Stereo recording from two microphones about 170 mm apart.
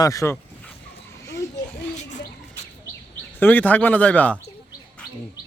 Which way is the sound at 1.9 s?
45° left (ahead or behind).